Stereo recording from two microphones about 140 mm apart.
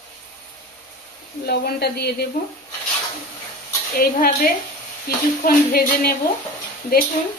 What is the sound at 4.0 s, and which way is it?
Speech, 90° left.